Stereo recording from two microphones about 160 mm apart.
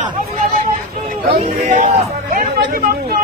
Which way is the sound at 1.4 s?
45° right (ahead or behind).